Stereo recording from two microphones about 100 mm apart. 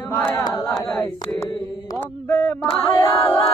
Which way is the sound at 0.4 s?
40° left (ahead or behind).